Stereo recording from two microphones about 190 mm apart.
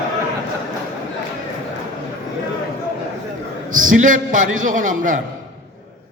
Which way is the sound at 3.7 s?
45° right (ahead or behind).